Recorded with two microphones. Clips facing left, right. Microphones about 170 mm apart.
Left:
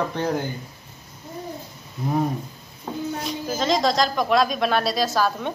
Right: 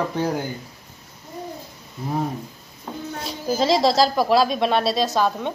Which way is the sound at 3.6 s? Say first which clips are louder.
Right 3 dB; 30° right (ahead or behind).